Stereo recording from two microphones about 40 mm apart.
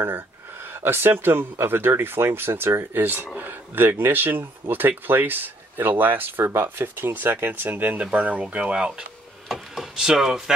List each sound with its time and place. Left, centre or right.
0.0 s speech: right
3.3 s speech: right
7.2 s speech: right
8.0 s speech: right
9.9 s speech: centre